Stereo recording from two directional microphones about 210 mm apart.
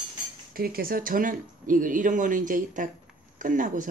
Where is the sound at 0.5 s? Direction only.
45° right (ahead or behind).